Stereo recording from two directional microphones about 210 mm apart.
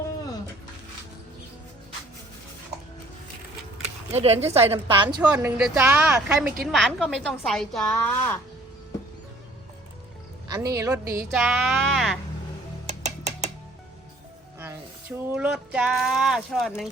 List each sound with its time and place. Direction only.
4.1 s speech: 30° right (ahead or behind)
4.9 s a woman's voice: 10° right (ahead or behind); by 8.4 s 10° left (ahead or behind)
10.5 s speech: 15° right (ahead or behind)
12.9 s a sound: 35° right (ahead or behind)
15.4 s a woman's voice: 5° right (ahead or behind)